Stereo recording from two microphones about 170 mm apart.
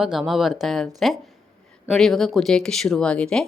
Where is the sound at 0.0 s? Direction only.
Centre (ahead or behind).